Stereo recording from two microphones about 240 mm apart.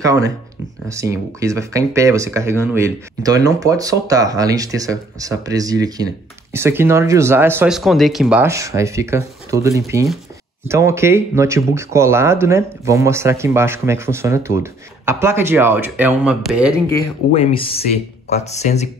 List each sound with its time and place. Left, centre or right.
0.0 s speech: centre
17.3 s speech: left